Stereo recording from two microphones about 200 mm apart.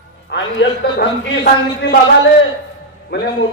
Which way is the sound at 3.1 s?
55° left (ahead or behind).